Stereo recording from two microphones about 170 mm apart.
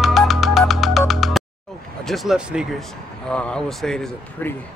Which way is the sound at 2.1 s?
Centre (ahead or behind).